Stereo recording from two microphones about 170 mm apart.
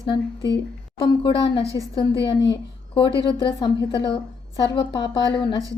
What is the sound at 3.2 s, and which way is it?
A woman's voice, 30° left (ahead or behind).